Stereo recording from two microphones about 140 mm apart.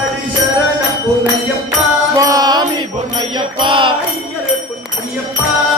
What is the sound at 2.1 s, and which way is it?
Music, 25° right (ahead or behind).